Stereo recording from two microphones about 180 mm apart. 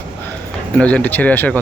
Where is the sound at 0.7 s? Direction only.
5° left (ahead or behind).